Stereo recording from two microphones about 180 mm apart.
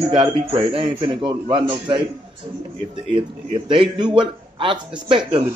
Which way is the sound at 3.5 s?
30° right (ahead or behind).